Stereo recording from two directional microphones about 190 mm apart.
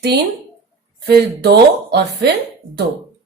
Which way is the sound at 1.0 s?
55° right (ahead or behind).